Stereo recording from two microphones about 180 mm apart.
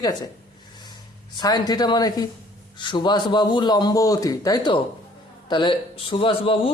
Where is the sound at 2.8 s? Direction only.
25° left (ahead or behind).